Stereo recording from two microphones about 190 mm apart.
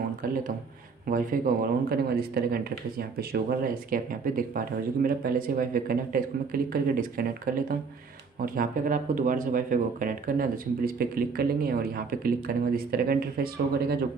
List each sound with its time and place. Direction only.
1.0 s speech: 45° right (ahead or behind)